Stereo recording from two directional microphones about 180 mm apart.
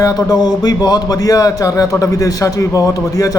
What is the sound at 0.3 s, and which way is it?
A man's voice, 20° left (ahead or behind).